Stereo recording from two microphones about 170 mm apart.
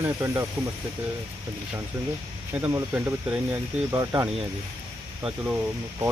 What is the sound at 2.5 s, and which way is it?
Speech, 10° right (ahead or behind).